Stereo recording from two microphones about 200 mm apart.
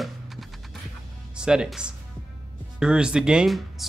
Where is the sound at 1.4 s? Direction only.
5° right (ahead or behind).